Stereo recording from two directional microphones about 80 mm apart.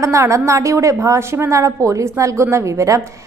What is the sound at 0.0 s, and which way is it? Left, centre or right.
A woman's voice, right.